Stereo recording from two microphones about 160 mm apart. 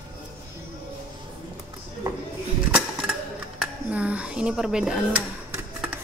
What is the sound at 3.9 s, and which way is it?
Speech, 10° right (ahead or behind).